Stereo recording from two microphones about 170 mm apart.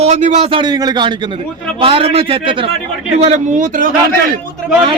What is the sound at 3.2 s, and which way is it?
Speech, 40° right (ahead or behind).